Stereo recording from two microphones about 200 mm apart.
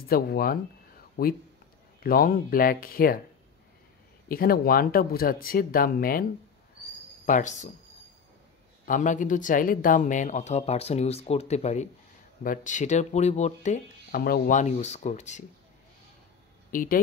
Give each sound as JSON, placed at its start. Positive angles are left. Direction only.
{"t": 0.1, "sound": "speech", "side_deg": 45}
{"t": 2.0, "sound": "speech", "side_deg": 45}
{"t": 4.3, "sound": "speech", "side_deg": 50}
{"t": 7.2, "sound": "speech", "side_deg": 40}
{"t": 8.8, "sound": "speech", "side_deg": 40}
{"t": 14.2, "sound": "speech", "side_deg": 45}
{"t": 16.7, "sound": "speech", "side_deg": 45}